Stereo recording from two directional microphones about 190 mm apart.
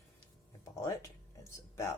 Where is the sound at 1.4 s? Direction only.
15° left (ahead or behind).